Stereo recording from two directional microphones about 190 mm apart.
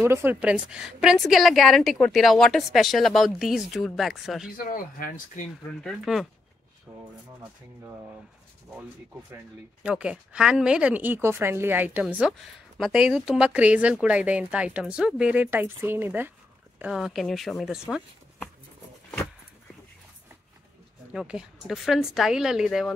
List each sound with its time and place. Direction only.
0.0 s a woman's voice: 10° right (ahead or behind)
4.6 s speech: 45° left (ahead or behind)
5.8 s a woman's voice: centre (ahead or behind)
6.9 s speech: 15° right (ahead or behind)
9.8 s a woman's voice: 5° right (ahead or behind)
21.1 s a woman's voice: 5° right (ahead or behind)